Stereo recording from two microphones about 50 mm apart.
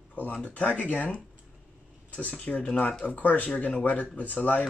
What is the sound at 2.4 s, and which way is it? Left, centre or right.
Speech, left.